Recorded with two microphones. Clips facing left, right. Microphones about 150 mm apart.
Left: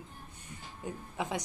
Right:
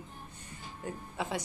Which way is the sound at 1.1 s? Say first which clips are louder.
Even; 15° left (ahead or behind).